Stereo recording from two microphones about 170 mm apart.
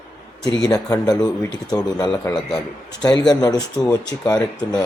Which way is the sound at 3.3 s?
20° left (ahead or behind).